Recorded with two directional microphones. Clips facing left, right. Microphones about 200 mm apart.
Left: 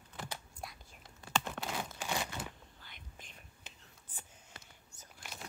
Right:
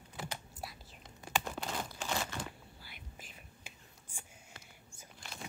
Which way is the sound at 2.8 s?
5° right (ahead or behind).